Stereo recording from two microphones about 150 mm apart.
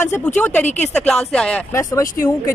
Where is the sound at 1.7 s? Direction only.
20° left (ahead or behind).